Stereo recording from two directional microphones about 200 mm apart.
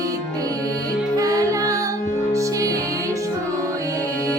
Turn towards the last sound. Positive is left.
turn(degrees=-15)  # may be behind; listen again after turning